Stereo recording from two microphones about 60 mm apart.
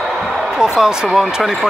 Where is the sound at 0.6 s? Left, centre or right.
Centre.